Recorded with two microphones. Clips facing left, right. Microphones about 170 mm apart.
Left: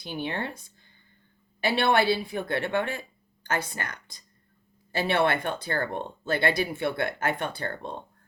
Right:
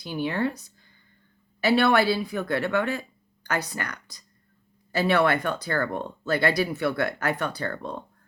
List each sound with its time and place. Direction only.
0.0 s speech: 20° left (ahead or behind)